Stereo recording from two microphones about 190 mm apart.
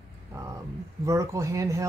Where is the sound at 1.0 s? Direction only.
15° right (ahead or behind).